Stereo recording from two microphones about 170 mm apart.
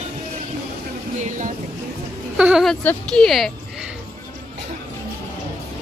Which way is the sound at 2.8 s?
10° left (ahead or behind).